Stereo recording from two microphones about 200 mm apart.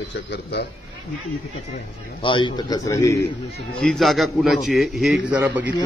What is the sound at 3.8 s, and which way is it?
A man's voice, centre (ahead or behind).